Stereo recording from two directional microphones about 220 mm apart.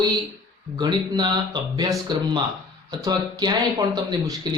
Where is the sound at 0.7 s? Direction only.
20° right (ahead or behind).